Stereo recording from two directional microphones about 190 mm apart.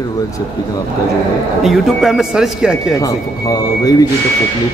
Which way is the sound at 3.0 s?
20° left (ahead or behind).